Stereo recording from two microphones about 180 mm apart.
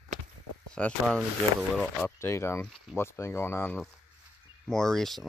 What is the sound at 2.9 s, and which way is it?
Speech, 15° left (ahead or behind).